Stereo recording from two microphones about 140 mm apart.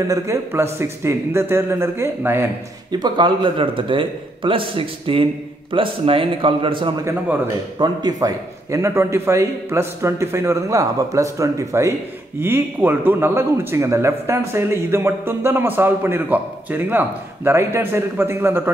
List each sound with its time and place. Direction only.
0.1 s a man's voice: 20° right (ahead or behind)
2.9 s a man's voice: 30° right (ahead or behind)